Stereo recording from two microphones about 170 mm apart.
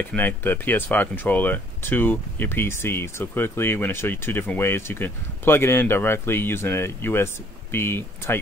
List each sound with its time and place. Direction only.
0.0 s speech: 10° left (ahead or behind)